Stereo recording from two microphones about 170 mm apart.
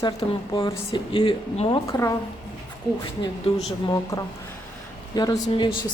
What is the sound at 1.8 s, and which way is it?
Speech, 20° left (ahead or behind).